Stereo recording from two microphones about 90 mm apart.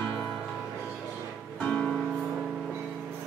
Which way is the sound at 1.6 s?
10° left (ahead or behind).